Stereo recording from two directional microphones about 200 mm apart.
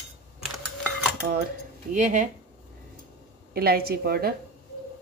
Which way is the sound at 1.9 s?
40° right (ahead or behind).